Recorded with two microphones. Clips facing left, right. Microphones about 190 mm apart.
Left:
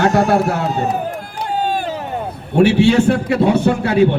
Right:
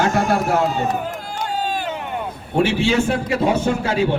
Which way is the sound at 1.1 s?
55° left (ahead or behind).